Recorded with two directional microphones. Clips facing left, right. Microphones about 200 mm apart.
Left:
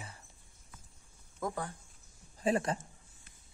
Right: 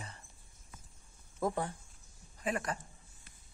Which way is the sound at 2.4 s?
30° left (ahead or behind).